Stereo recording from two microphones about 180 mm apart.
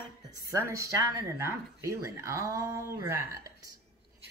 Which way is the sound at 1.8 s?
15° right (ahead or behind).